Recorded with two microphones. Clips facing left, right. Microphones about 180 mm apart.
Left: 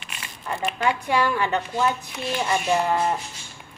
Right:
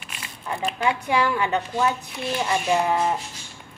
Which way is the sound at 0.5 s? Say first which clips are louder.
Even; 10° right (ahead or behind).